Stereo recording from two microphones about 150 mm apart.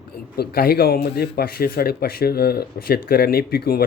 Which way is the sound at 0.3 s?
90° left.